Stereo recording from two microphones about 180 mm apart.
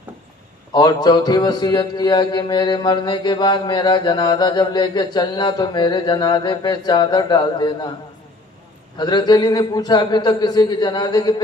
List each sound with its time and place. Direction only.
0.7 s a man's voice: 20° left (ahead or behind)
9.0 s a man's voice: 25° left (ahead or behind)